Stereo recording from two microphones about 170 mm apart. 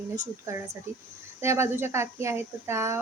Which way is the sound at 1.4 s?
15° right (ahead or behind).